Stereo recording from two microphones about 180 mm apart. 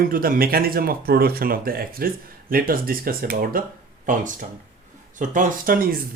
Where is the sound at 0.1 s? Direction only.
55° right (ahead or behind).